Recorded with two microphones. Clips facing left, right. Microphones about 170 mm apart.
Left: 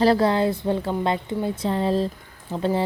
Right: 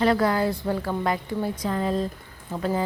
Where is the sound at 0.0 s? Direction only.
30° left (ahead or behind).